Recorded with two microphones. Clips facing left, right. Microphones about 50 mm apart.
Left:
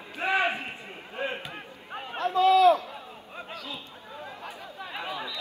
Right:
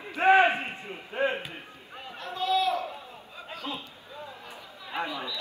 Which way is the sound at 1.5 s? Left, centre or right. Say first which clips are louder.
Left 4 dB; left.